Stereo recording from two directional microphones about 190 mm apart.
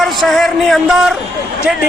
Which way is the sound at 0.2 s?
Centre (ahead or behind).